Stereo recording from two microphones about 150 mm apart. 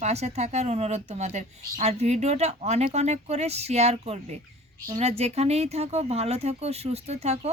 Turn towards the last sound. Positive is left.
turn(degrees=-45)  # may be behind; listen again after turning